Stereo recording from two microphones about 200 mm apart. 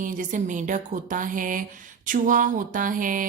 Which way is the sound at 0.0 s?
40° right (ahead or behind).